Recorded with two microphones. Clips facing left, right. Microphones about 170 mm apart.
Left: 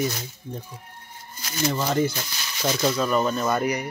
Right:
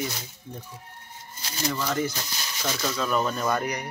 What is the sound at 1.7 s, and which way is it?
Speech, 30° left (ahead or behind).